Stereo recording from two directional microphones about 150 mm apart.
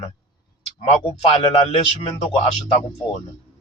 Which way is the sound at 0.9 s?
40° left (ahead or behind).